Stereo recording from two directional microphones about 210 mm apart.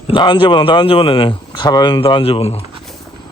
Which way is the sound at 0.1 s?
25° left (ahead or behind).